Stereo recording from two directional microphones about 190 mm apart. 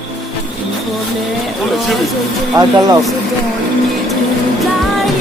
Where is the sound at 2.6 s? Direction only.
20° right (ahead or behind).